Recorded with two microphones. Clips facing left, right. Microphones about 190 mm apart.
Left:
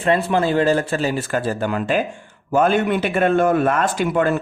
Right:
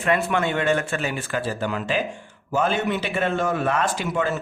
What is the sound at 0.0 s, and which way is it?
A man's voice, 30° left (ahead or behind).